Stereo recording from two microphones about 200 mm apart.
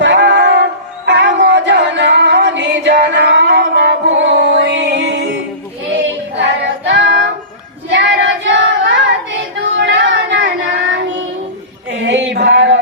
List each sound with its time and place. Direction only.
0.0 s music: 65° right (ahead or behind)
6.4 s child singing: 60° right (ahead or behind)
11.9 s a sound: 65° right (ahead or behind)